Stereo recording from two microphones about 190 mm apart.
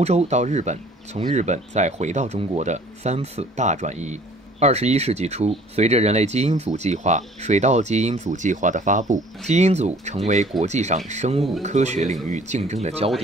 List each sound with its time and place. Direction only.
0.0 s speech: 35° right (ahead or behind)